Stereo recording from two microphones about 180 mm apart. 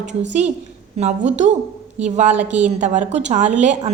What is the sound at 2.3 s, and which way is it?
Speech, 10° right (ahead or behind).